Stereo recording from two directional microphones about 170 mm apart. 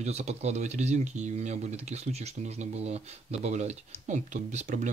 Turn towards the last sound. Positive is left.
turn(degrees=-45)  # may be behind; listen again after turning